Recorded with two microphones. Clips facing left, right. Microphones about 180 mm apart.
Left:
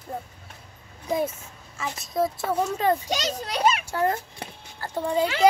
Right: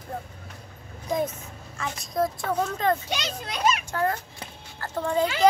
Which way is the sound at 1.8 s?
5° left (ahead or behind).